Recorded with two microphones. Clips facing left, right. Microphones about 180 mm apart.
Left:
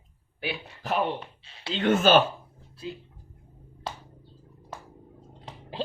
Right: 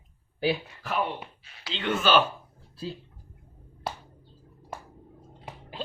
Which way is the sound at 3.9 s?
10° right (ahead or behind).